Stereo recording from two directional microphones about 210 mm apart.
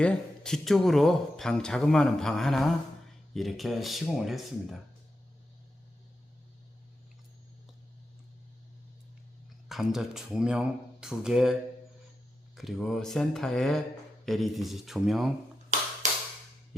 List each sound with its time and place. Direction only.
0.0 s speech: 5° left (ahead or behind)
9.6 s speech: centre (ahead or behind)
12.5 s speech: centre (ahead or behind)
16.0 s a sound: 35° right (ahead or behind)